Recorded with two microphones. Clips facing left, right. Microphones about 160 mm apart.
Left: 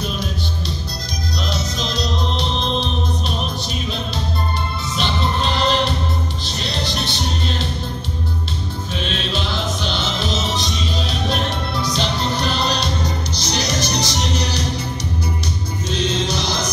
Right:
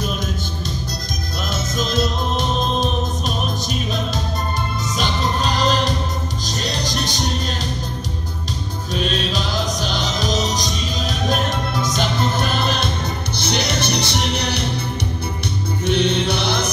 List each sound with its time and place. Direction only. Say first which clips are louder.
1.5 s music: right 5 dB; 50° right (ahead or behind)
4.9 s music: left 1 dB; 40° right (ahead or behind)
8.9 s music: right 3 dB; 40° right (ahead or behind); by 14.7 s 60° right (ahead or behind)
15.9 s music: right 3 dB; 60° right (ahead or behind)